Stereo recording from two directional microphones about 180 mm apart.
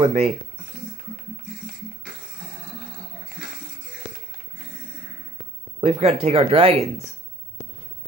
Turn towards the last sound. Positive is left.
turn(degrees=-35)  # may be behind; listen again after turning